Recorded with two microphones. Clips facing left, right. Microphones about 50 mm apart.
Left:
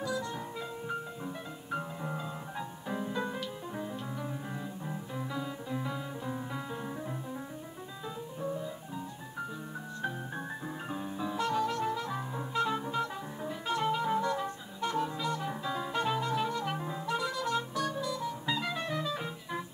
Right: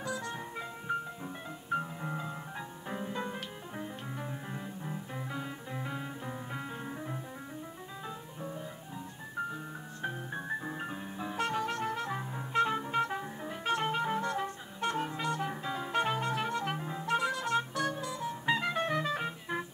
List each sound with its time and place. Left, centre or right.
0.0 s music: right
1.8 s music: centre
2.9 s music: right
5.3 s music: right
10.9 s music: right